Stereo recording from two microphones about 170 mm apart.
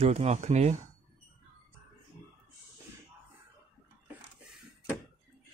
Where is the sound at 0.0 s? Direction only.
35° right (ahead or behind).